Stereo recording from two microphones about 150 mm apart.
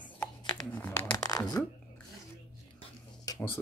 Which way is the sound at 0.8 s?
20° left (ahead or behind).